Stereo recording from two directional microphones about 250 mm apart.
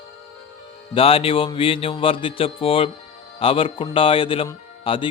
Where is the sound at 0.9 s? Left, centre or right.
Left.